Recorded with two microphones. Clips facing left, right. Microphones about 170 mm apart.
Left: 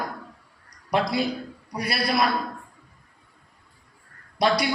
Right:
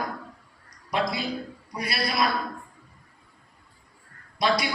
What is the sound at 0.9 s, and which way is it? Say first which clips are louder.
A man's voice: left 4 dB; 55° left (ahead or behind).